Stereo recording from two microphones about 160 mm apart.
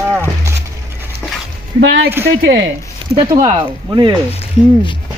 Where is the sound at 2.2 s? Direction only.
90° right.